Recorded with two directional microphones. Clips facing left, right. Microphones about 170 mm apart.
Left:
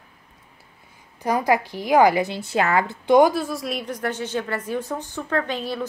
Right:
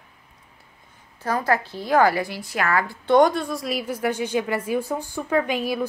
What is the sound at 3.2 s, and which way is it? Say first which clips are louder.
A woman's voice: even; 5° left (ahead or behind).